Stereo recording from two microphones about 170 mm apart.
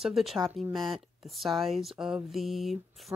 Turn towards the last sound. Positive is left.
turn(degrees=0)  # may be behind; listen again after turning